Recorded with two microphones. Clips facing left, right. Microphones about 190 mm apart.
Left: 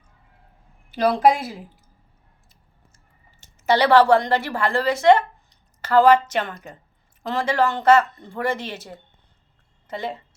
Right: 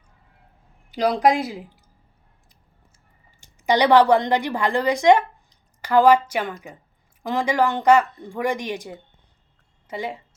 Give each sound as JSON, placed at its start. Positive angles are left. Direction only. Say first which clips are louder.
{"t": 0.9, "sound": "a woman's voice", "louder": "left 1 dB", "side_deg": -15}
{"t": 3.4, "sound": "a woman's voice", "louder": "even", "side_deg": -15}